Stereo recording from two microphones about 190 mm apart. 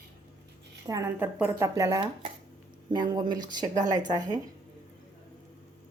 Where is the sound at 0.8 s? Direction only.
15° right (ahead or behind).